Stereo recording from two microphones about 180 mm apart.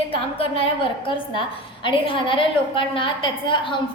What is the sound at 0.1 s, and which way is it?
A woman's voice, 30° left (ahead or behind).